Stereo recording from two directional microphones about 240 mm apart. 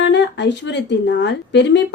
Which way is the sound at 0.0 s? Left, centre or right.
Left.